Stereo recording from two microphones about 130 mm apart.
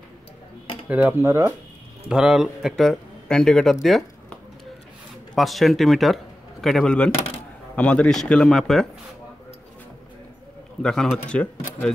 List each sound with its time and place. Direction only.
0.8 s speech: 10° right (ahead or behind)
2.0 s a man's voice: 5° right (ahead or behind)
5.3 s a man's voice: centre (ahead or behind)
10.8 s a man's voice: 5° left (ahead or behind)